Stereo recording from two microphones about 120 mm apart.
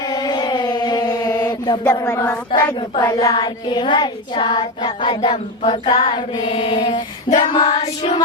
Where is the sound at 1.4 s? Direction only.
35° left (ahead or behind).